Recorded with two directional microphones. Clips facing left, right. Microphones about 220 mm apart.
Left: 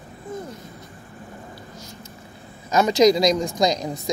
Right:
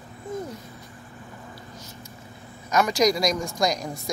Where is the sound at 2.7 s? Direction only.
25° left (ahead or behind).